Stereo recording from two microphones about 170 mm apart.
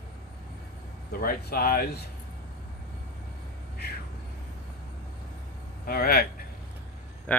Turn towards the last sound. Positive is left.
turn(degrees=10)  # may be behind; listen again after turning